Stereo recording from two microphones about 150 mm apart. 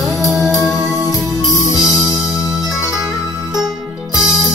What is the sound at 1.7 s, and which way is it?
Music, 20° left (ahead or behind).